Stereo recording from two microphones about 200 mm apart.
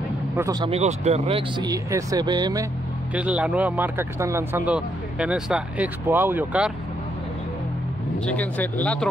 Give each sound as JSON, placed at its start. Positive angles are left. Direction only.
{"t": 0.4, "sound": "speech", "side_deg": -20}
{"t": 0.7, "sound": "speech", "side_deg": -35}
{"t": 1.6, "sound": "speech", "side_deg": -15}
{"t": 3.2, "sound": "speech", "side_deg": -5}
{"t": 8.3, "sound": "speech", "side_deg": 5}